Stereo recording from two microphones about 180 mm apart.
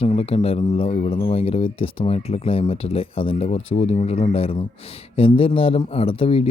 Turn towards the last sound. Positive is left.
turn(degrees=30)  # may be behind; listen again after turning